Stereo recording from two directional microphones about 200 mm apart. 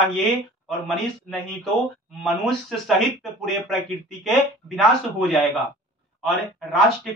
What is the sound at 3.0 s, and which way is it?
Speech, centre (ahead or behind).